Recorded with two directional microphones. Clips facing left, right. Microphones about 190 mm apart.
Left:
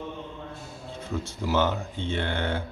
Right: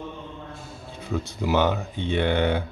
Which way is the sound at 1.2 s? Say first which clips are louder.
Right 3 dB; 15° right (ahead or behind).